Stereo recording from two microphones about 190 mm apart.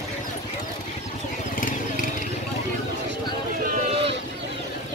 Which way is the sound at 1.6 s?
45° left (ahead or behind).